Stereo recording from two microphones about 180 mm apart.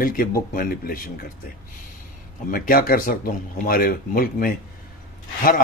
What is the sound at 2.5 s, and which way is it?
Speech, 50° left (ahead or behind).